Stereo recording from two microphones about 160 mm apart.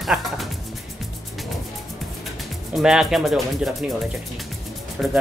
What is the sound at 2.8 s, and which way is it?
Speech, centre (ahead or behind).